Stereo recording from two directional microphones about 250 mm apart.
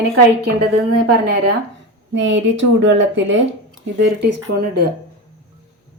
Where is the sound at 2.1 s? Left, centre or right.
Right.